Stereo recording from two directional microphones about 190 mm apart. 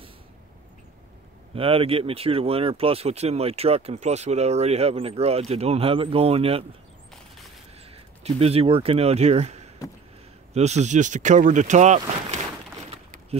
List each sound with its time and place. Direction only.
1.5 s speech: 30° right (ahead or behind)
7.9 s speech: 35° right (ahead or behind)
12.8 s a sound: 35° right (ahead or behind)